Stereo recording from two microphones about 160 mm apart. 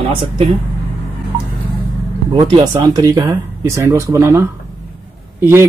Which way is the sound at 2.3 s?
25° right (ahead or behind).